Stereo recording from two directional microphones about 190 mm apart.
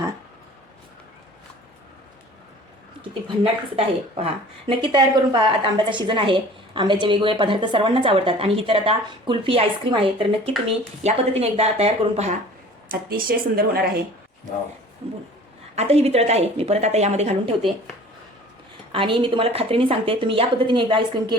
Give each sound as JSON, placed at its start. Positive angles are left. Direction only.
{"t": 3.0, "sound": "a woman's voice", "side_deg": -30}
{"t": 12.9, "sound": "speech", "side_deg": -50}
{"t": 15.7, "sound": "speech", "side_deg": -35}
{"t": 18.9, "sound": "a woman's voice", "side_deg": -30}